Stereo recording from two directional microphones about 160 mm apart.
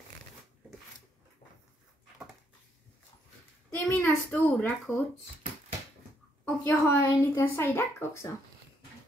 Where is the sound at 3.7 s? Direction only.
10° left (ahead or behind).